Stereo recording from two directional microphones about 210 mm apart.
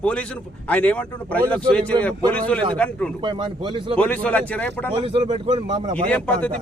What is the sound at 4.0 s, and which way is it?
Speech, 5° left (ahead or behind).